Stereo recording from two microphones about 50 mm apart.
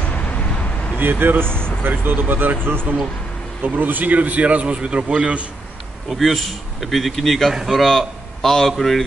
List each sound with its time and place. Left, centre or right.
0.0 s vehicle: left
0.9 s speech: right
1.4 s speech: centre
1.8 s a man's voice: right
6.0 s a man's voice: centre